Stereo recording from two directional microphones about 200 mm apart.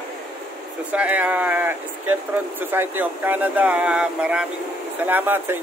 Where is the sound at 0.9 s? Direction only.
5° right (ahead or behind).